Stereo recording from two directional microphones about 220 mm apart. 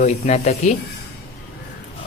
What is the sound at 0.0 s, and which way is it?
Speech, 30° left (ahead or behind).